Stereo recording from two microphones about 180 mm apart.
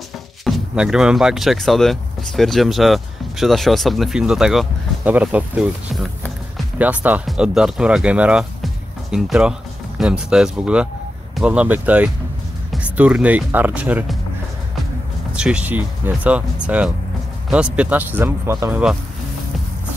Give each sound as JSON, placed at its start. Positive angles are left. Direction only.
{"t": 0.5, "sound": "speech", "side_deg": -5}
{"t": 15.3, "sound": "speech", "side_deg": -5}